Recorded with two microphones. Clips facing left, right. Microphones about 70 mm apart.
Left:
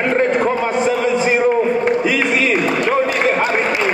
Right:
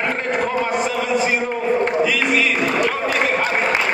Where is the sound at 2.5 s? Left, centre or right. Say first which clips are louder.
Left 2 dB; centre.